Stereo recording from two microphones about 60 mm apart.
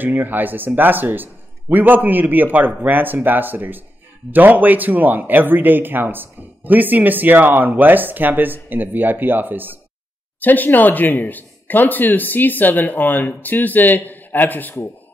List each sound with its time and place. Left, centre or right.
0.0 s speech: right
10.4 s speech: left